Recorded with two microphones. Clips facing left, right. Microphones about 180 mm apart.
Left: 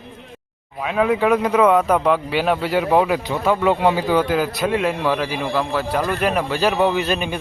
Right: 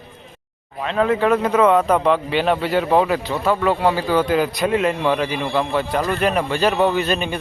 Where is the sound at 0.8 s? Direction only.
5° left (ahead or behind).